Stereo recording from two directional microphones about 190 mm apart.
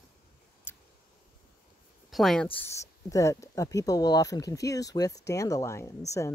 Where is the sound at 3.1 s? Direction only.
15° left (ahead or behind).